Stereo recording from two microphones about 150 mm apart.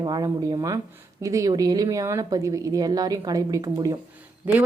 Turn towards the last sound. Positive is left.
turn(degrees=-10)  # may be behind; listen again after turning